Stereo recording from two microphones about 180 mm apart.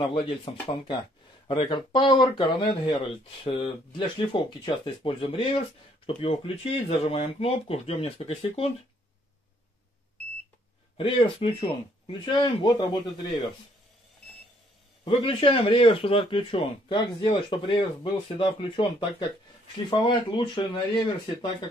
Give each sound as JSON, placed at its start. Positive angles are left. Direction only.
{"t": 0.0, "sound": "speech", "side_deg": 30}
{"t": 11.0, "sound": "speech", "side_deg": 30}
{"t": 15.0, "sound": "speech", "side_deg": 30}